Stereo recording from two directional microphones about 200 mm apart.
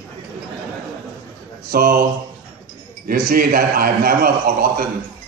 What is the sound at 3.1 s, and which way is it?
A man's voice, 45° right (ahead or behind).